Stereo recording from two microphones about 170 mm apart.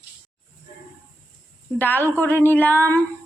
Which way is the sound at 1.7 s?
10° left (ahead or behind).